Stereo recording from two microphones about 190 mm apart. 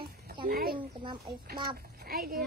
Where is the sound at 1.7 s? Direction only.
50° right (ahead or behind).